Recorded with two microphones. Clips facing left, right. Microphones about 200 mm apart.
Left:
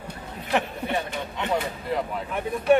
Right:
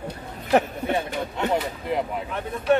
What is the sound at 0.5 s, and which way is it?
Speech, 45° right (ahead or behind).